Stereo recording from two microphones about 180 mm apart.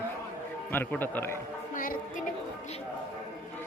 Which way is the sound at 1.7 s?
50° left (ahead or behind).